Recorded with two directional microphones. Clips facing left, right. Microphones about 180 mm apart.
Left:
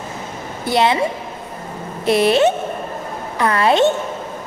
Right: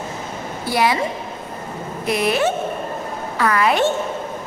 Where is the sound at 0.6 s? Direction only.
25° left (ahead or behind).